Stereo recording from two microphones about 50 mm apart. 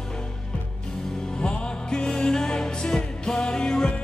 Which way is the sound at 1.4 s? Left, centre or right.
Centre.